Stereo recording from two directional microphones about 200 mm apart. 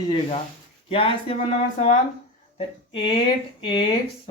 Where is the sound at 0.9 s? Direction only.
25° left (ahead or behind).